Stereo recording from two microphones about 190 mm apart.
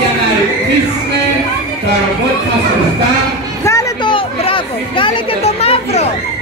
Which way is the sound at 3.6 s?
15° left (ahead or behind).